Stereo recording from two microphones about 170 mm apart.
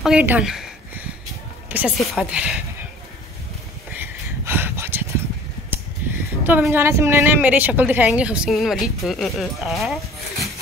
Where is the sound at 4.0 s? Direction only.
10° right (ahead or behind).